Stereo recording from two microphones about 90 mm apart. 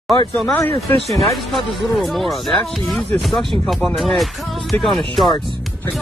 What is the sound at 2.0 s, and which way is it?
Speech, centre (ahead or behind).